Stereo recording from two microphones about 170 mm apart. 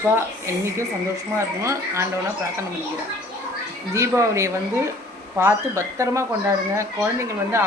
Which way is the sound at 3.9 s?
15° right (ahead or behind).